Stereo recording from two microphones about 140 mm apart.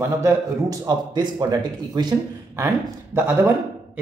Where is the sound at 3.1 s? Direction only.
15° right (ahead or behind).